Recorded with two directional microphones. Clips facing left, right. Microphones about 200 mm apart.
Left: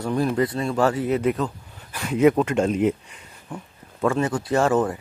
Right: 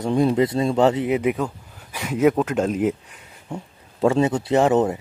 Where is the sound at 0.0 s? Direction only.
20° right (ahead or behind); by 3.3 s centre (ahead or behind).